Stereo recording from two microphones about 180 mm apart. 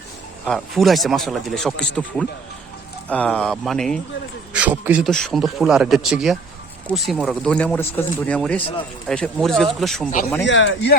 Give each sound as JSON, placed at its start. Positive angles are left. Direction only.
{"t": 0.4, "sound": "speech", "side_deg": 0}
{"t": 4.5, "sound": "a man's voice", "side_deg": -10}
{"t": 10.4, "sound": "speech", "side_deg": 85}